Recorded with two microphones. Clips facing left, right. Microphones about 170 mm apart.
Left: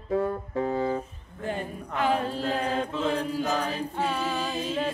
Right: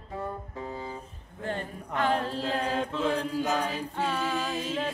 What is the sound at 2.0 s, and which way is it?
Mantra, 5° left (ahead or behind).